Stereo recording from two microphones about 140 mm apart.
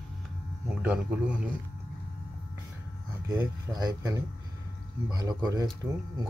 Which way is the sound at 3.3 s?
30° right (ahead or behind).